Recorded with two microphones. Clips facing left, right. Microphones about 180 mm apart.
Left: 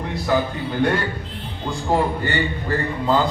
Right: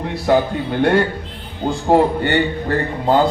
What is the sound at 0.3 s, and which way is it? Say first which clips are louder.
A man's voice: right 6 dB; 55° right (ahead or behind).